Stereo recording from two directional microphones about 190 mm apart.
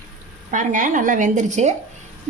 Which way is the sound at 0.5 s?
40° right (ahead or behind).